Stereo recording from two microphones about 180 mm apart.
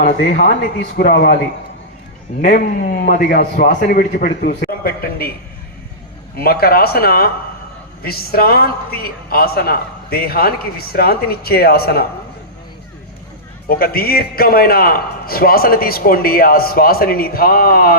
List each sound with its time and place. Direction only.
0.0 s a man's voice: 50° left (ahead or behind)
2.4 s a man's voice: 50° left (ahead or behind)
6.3 s a man's voice: 60° left (ahead or behind)
13.7 s a man's voice: 55° left (ahead or behind)